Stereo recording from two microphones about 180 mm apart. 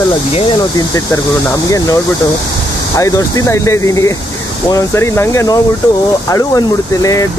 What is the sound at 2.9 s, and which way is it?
Speech, 20° left (ahead or behind).